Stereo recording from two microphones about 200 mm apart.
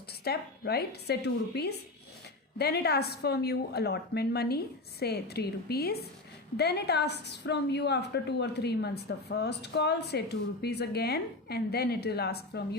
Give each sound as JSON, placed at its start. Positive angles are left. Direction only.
{"t": 0.3, "sound": "a woman's voice", "side_deg": 50}